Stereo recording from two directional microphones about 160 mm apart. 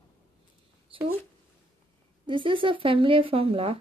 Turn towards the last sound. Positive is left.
turn(degrees=-35)  # may be behind; listen again after turning